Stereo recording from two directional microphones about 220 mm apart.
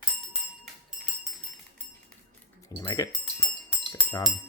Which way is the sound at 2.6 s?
15° left (ahead or behind).